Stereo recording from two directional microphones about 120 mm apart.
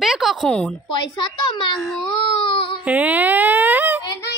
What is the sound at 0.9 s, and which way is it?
Speech, 40° left (ahead or behind).